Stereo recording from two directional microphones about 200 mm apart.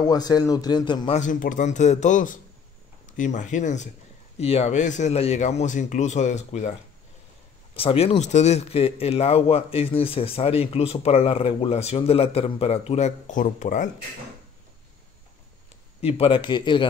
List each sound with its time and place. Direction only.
0.0 s speech: 20° left (ahead or behind)
1.2 s speech: 40° left (ahead or behind)
7.7 s speech: 30° left (ahead or behind)
16.0 s speech: 30° left (ahead or behind)